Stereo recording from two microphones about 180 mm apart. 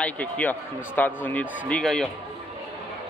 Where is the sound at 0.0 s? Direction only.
10° left (ahead or behind).